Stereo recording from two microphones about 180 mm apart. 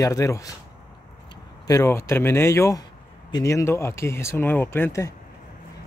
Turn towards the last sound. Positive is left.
turn(degrees=15)  # may be behind; listen again after turning